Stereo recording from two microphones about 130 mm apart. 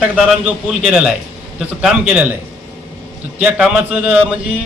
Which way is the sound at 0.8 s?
5° right (ahead or behind).